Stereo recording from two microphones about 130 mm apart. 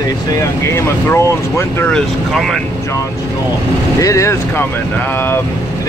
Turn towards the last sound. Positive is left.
turn(degrees=20)  # may be behind; listen again after turning